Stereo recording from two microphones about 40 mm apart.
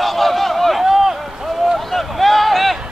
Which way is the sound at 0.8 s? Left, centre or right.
Centre.